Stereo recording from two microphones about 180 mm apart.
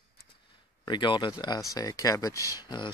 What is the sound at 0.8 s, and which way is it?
Speech, 25° left (ahead or behind).